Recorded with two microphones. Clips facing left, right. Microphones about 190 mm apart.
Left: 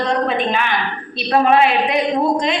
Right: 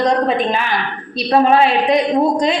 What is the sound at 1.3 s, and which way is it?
Speech, 35° right (ahead or behind).